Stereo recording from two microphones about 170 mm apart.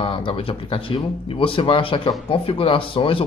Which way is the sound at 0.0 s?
30° left (ahead or behind).